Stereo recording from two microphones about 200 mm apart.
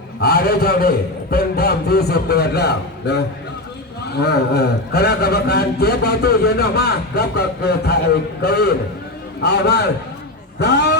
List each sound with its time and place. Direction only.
0.2 s a man's voice: 50° left (ahead or behind)